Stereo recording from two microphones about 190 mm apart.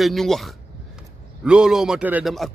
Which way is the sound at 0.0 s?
Centre (ahead or behind).